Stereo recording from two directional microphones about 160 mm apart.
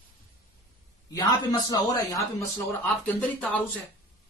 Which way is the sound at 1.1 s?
25° left (ahead or behind).